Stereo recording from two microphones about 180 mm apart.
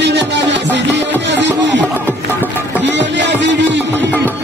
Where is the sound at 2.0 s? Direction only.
10° right (ahead or behind).